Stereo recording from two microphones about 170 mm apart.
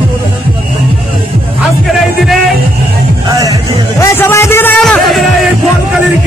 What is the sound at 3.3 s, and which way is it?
Music, 20° right (ahead or behind).